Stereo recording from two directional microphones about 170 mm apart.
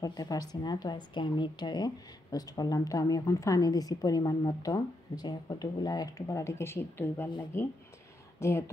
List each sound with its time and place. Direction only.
0.0 s a woman's voice: 20° left (ahead or behind)